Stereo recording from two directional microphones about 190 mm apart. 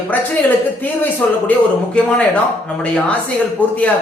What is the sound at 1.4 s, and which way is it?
A man's voice, 5° left (ahead or behind).